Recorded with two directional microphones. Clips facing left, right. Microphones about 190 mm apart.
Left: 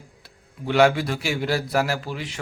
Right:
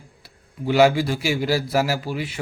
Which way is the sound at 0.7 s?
5° right (ahead or behind).